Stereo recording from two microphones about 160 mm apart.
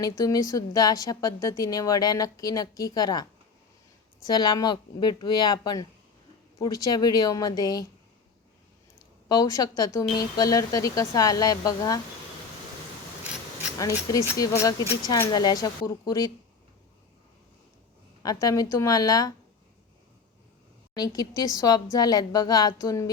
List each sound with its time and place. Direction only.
0.0 s a woman's voice: 25° left (ahead or behind)
4.3 s a woman's voice: 25° left (ahead or behind)
9.3 s a woman's voice: 25° left (ahead or behind)
13.7 s a woman's voice: 20° left (ahead or behind)
18.2 s a woman's voice: 20° left (ahead or behind)
20.9 s a woman's voice: 25° left (ahead or behind)